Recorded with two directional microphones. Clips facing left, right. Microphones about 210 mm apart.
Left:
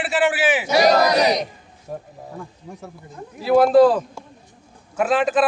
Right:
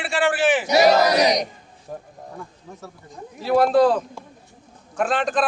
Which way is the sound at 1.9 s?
5° left (ahead or behind).